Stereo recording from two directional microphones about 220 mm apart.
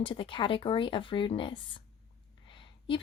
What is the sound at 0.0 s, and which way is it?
Speech, 25° left (ahead or behind).